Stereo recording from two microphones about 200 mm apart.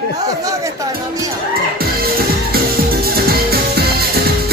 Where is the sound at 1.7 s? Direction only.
50° right (ahead or behind).